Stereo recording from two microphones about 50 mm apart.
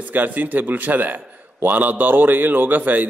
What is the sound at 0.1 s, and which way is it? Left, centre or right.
A man's voice, right.